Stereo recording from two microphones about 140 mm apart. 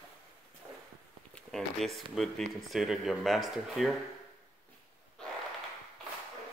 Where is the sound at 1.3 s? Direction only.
Centre (ahead or behind).